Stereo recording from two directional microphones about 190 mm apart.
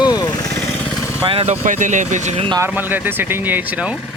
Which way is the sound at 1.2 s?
30° right (ahead or behind).